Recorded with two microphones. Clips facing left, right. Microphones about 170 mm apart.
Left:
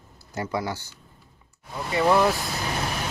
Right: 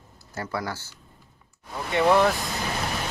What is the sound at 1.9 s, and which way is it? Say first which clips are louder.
Speech: right 1 dB; 5° left (ahead or behind).